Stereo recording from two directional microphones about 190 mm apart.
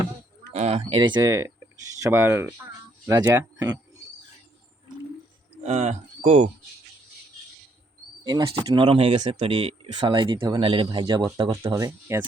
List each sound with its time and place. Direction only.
0.5 s speech: 35° right (ahead or behind); by 4.0 s 20° right (ahead or behind)
5.6 s speech: 35° right (ahead or behind)
8.2 s speech: 20° right (ahead or behind)